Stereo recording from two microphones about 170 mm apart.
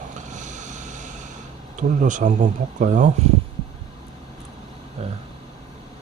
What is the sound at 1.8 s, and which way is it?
Speech, 50° right (ahead or behind).